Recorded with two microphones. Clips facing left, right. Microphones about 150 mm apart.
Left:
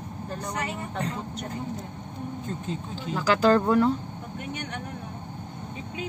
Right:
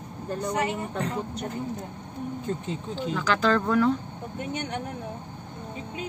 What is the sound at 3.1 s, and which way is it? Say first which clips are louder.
Speech: left 4 dB; 40° left (ahead or behind).